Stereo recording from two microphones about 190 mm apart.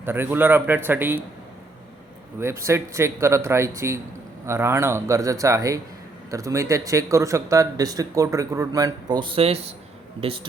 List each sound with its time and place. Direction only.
0.0 s speech: 10° right (ahead or behind)
2.4 s speech: 15° right (ahead or behind); by 10.4 s 30° right (ahead or behind)